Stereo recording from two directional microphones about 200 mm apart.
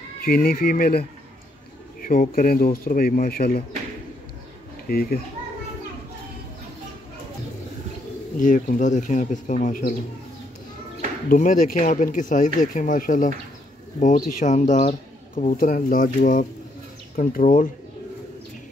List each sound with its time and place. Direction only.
0.2 s speech: 45° left (ahead or behind)
4.8 s speech: 45° left (ahead or behind)
8.4 s speech: 40° left (ahead or behind)
11.2 s speech: 40° left (ahead or behind)